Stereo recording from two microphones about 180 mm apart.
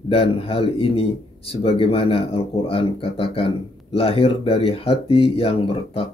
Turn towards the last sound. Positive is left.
turn(degrees=30)  # may be behind; listen again after turning